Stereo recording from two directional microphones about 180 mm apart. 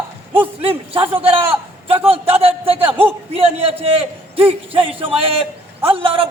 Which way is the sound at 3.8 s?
30° right (ahead or behind).